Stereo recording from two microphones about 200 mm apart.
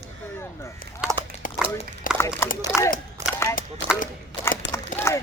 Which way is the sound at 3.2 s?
35° right (ahead or behind).